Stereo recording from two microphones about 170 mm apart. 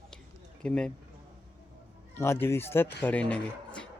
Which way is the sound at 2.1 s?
15° left (ahead or behind).